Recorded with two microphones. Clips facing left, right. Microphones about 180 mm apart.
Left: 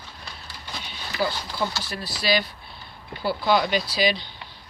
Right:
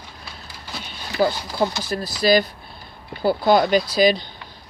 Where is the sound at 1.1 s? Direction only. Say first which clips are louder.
Right 6 dB; 45° right (ahead or behind).